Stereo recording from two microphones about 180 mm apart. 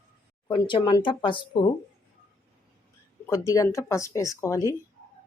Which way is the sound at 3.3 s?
20° left (ahead or behind).